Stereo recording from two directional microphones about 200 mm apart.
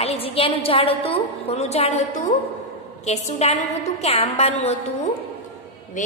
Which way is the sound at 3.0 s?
35° left (ahead or behind).